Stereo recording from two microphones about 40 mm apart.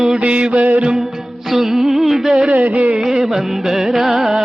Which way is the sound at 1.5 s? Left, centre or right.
Centre.